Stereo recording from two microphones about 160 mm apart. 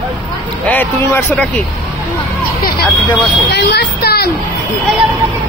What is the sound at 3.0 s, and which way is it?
Speech, 30° left (ahead or behind).